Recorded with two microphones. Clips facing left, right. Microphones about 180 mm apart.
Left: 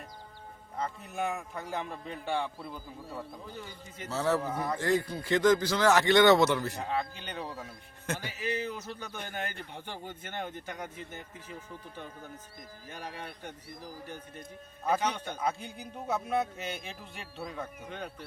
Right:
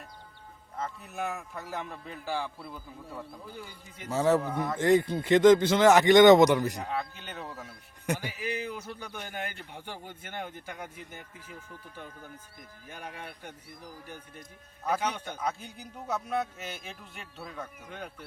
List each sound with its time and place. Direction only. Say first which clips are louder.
0.8 s a man's voice: left 1 dB; centre (ahead or behind)
3.4 s speech: even; 10° right (ahead or behind)
4.4 s a man's voice: right 1 dB; 5° left (ahead or behind)
4.8 s speech: right 8 dB; 20° right (ahead or behind)
6.9 s a man's voice: left 1 dB; 5° right (ahead or behind)
8.0 s speech: right 2 dB; 15° right (ahead or behind)
12.9 s speech: even; 10° right (ahead or behind)
14.8 s a man's voice: left 1 dB; 5° right (ahead or behind)